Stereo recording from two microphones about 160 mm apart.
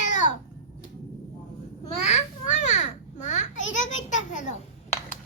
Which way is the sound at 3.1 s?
50° left (ahead or behind).